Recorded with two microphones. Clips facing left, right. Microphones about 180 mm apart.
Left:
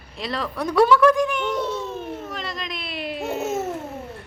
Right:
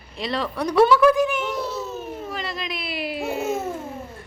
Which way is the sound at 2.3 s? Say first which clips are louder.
Right 1 dB; centre (ahead or behind).